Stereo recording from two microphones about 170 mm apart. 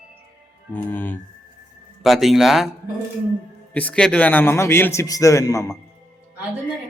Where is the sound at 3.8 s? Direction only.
5° left (ahead or behind).